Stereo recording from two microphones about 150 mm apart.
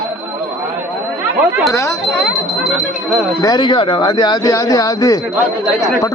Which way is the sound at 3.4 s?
30° left (ahead or behind).